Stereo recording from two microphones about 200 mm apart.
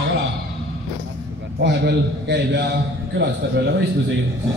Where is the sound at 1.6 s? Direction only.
55° right (ahead or behind).